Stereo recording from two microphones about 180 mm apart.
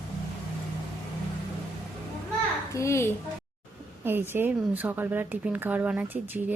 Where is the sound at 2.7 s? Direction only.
15° left (ahead or behind).